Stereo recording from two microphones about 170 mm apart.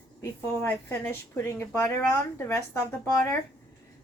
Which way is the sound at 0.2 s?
15° left (ahead or behind).